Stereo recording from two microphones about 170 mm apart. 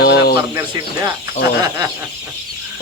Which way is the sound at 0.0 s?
65° left (ahead or behind).